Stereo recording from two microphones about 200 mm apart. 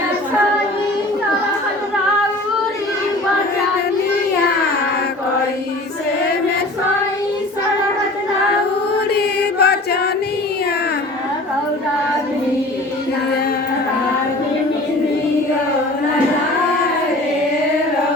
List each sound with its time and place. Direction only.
9.1 s choir: 55° left (ahead or behind)